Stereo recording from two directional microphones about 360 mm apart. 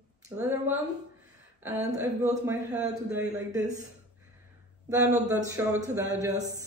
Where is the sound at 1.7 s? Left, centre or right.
Centre.